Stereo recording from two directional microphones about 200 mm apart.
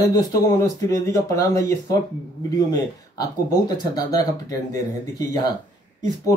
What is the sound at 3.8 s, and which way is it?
A man's voice, 20° left (ahead or behind).